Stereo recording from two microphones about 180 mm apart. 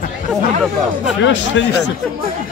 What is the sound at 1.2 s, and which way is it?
Speech, 90° left.